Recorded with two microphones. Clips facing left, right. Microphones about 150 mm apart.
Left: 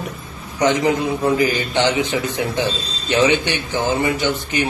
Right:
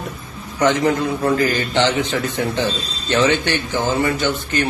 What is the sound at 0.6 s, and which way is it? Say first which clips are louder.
A man's voice: even; 15° left (ahead or behind).